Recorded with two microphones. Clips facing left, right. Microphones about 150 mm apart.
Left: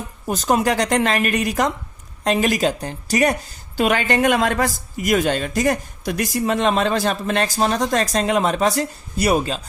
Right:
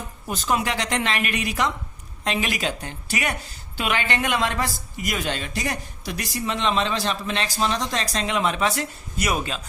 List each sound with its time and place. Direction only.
0.3 s speech: 40° left (ahead or behind)